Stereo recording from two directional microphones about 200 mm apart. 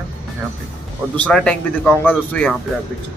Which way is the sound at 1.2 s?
5° left (ahead or behind).